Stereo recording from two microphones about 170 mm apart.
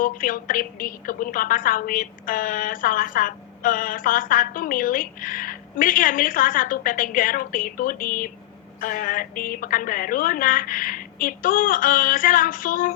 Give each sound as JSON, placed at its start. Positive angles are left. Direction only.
{"t": 0.0, "sound": "a woman's voice", "side_deg": 55}